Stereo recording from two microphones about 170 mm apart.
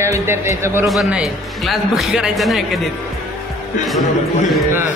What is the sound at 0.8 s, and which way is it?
Speech, centre (ahead or behind).